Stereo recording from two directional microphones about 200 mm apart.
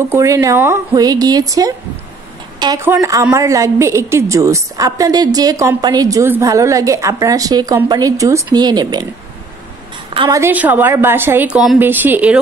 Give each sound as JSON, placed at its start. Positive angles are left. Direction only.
{"t": 0.1, "sound": "a woman's voice", "side_deg": -15}
{"t": 10.1, "sound": "a woman's voice", "side_deg": -25}
{"t": 10.4, "sound": "a woman's voice", "side_deg": -10}